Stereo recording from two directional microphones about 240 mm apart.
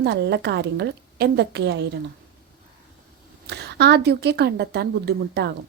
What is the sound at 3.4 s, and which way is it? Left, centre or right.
A woman's voice, right.